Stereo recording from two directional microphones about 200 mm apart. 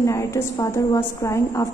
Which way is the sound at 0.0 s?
15° left (ahead or behind).